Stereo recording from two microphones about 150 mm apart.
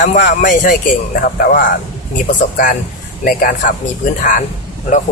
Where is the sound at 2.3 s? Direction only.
60° left (ahead or behind).